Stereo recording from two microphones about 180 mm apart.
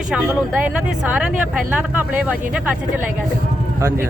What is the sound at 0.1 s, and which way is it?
Speech, 5° right (ahead or behind).